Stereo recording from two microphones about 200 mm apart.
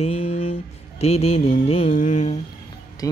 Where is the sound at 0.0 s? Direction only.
30° left (ahead or behind).